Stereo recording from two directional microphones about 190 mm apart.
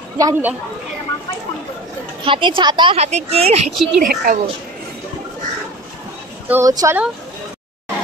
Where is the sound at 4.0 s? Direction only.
50° right (ahead or behind).